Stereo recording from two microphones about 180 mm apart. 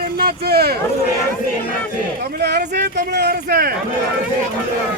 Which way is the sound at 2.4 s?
65° right (ahead or behind).